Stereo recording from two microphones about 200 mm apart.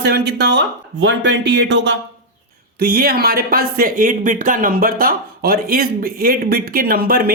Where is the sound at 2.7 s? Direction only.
50° right (ahead or behind).